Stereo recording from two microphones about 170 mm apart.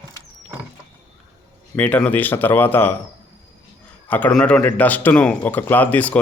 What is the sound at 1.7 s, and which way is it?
Speech, 10° left (ahead or behind).